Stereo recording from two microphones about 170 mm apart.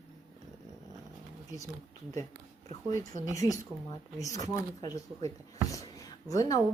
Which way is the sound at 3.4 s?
20° left (ahead or behind).